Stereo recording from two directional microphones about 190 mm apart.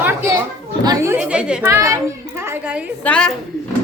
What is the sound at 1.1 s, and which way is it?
Speech, 5° right (ahead or behind).